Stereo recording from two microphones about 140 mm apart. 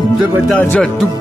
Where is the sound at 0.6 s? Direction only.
10° left (ahead or behind).